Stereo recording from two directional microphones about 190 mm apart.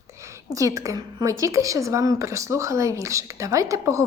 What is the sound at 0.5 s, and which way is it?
A woman's voice, 15° right (ahead or behind).